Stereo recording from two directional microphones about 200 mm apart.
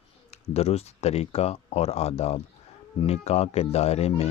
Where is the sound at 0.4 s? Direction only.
30° left (ahead or behind).